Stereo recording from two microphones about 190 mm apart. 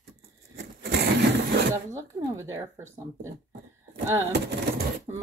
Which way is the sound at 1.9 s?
15° right (ahead or behind).